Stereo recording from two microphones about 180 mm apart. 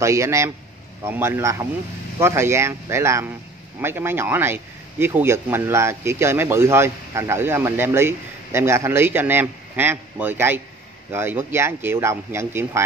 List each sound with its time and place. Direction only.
0.0 s speech: 15° right (ahead or behind)